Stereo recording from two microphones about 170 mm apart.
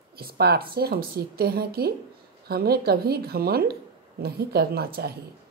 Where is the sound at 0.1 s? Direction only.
65° right (ahead or behind).